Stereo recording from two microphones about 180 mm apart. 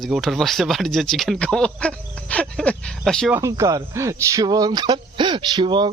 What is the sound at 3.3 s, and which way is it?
Speech, 15° right (ahead or behind).